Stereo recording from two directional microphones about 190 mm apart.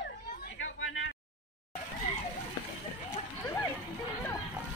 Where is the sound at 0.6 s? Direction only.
90° left.